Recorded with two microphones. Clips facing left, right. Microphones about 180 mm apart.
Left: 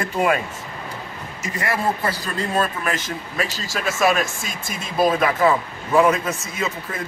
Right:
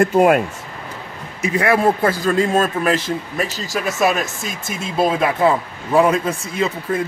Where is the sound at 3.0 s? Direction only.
20° right (ahead or behind).